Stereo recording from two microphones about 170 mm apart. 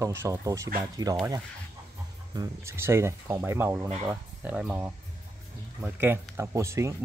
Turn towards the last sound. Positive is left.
turn(degrees=-15)  # may be behind; listen again after turning